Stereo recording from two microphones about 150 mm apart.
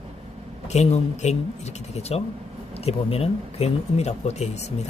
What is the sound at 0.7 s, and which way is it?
Speech, 50° left (ahead or behind).